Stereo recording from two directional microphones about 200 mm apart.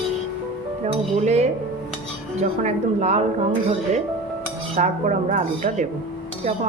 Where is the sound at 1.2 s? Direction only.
35° right (ahead or behind).